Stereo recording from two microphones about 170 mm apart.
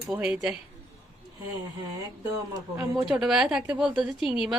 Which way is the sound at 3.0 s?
5° right (ahead or behind).